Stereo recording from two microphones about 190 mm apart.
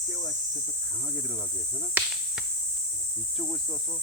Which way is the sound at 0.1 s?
Centre (ahead or behind).